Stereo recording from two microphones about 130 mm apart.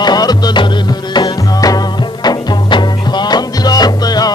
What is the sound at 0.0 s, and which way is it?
Music, 30° left (ahead or behind).